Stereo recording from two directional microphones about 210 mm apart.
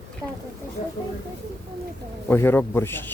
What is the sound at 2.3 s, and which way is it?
Speech, 10° left (ahead or behind).